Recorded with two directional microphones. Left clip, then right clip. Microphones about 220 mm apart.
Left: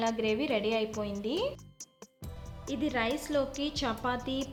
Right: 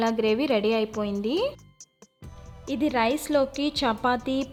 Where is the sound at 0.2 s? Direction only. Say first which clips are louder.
Right 7 dB; 35° right (ahead or behind).